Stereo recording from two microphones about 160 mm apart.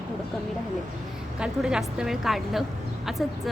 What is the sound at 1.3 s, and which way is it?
A woman's voice, 5° right (ahead or behind).